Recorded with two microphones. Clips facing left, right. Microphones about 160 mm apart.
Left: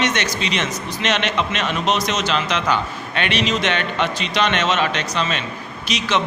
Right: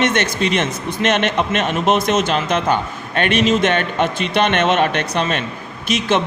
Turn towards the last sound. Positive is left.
turn(degrees=-50)  # may be behind; listen again after turning